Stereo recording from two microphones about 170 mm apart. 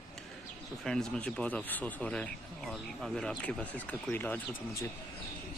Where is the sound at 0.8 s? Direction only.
5° left (ahead or behind).